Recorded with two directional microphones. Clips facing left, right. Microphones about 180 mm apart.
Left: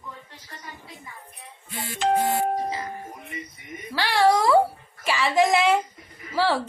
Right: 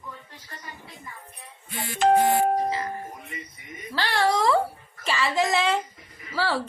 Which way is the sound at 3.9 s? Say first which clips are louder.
Left 4 dB; 10° left (ahead or behind).